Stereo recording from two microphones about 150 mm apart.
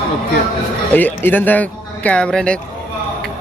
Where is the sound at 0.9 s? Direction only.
10° left (ahead or behind).